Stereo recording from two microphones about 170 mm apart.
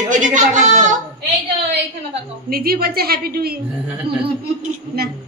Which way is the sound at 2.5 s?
60° right (ahead or behind).